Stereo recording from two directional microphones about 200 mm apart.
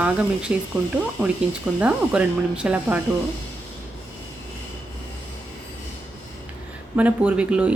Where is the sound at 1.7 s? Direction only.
5° right (ahead or behind).